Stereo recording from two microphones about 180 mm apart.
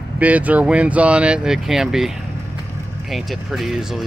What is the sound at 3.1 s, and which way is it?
Speech, centre (ahead or behind).